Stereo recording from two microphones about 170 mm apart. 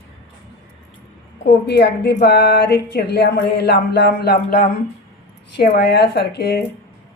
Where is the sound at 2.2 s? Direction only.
90° left.